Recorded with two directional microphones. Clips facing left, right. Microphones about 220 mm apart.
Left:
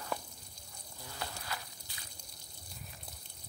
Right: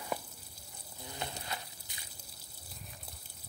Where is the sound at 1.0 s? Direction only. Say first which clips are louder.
Right 2 dB; 20° right (ahead or behind).